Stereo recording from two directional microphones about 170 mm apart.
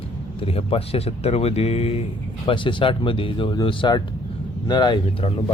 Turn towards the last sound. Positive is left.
turn(degrees=30)  # may be behind; listen again after turning